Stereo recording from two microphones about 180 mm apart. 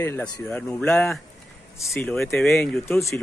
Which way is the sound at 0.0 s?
10° left (ahead or behind).